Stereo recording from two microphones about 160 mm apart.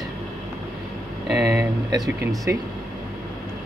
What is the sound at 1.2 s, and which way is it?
Speech, 10° right (ahead or behind).